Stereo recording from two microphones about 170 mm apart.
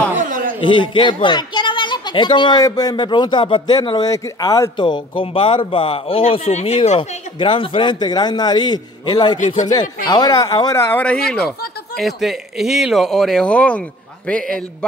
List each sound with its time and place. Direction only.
0.6 s speech: 30° left (ahead or behind); by 14.9 s 5° left (ahead or behind)